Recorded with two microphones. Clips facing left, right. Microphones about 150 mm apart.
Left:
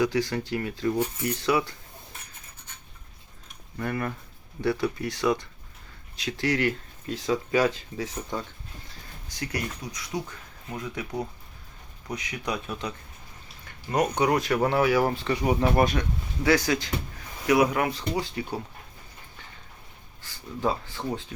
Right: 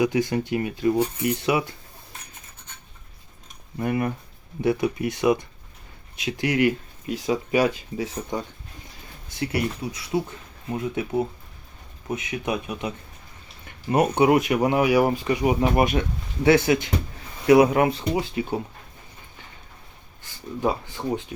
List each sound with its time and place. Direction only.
0.0 s speech: 20° right (ahead or behind)
3.8 s speech: 20° right (ahead or behind)
13.9 s speech: 25° right (ahead or behind)
20.2 s speech: 20° right (ahead or behind)